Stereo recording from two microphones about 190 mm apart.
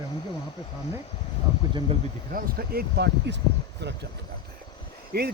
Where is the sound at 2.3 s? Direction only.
55° right (ahead or behind).